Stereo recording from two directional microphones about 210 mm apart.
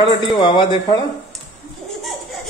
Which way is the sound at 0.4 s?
20° left (ahead or behind).